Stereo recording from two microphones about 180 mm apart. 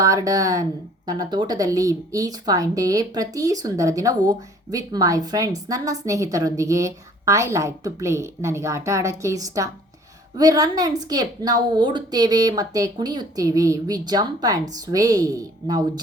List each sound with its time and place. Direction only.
0.0 s speech: 20° right (ahead or behind)